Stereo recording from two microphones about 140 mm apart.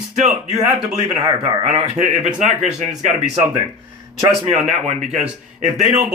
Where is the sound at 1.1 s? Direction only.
40° right (ahead or behind).